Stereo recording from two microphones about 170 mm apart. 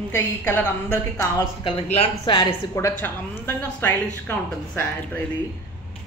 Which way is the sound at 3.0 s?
10° left (ahead or behind).